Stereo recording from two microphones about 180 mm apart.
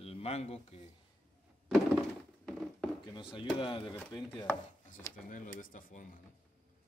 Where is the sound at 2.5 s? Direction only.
5° left (ahead or behind).